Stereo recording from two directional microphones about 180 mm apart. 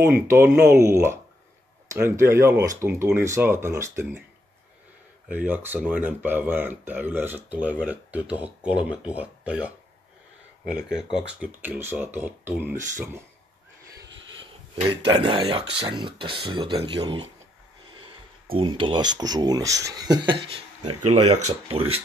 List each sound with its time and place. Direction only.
0.0 s speech: 15° right (ahead or behind)
5.3 s speech: 10° right (ahead or behind)
13.9 s a sound: 25° right (ahead or behind)
15.0 s speech: 25° right (ahead or behind)